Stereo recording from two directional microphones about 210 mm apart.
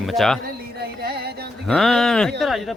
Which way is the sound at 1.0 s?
50° right (ahead or behind).